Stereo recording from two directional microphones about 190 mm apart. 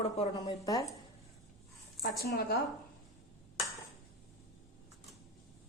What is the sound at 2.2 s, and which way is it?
Speech, 55° left (ahead or behind).